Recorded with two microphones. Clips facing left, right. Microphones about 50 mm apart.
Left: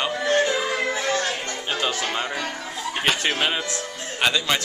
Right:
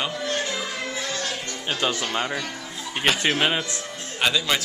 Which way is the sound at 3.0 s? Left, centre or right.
Centre.